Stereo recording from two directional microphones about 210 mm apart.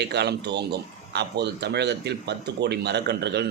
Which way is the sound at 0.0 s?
50° right (ahead or behind).